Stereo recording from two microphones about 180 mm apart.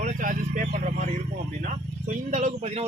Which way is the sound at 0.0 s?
45° right (ahead or behind).